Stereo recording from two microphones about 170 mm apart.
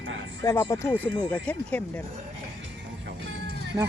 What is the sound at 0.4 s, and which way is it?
Speech, 15° left (ahead or behind).